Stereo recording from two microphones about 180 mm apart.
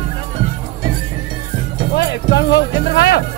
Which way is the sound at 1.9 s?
65° left (ahead or behind).